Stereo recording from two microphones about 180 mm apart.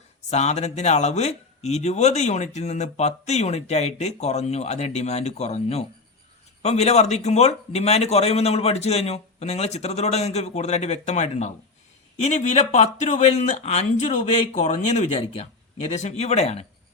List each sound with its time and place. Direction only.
0.3 s speech: 35° left (ahead or behind)